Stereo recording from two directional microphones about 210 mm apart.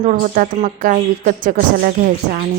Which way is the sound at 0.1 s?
40° right (ahead or behind).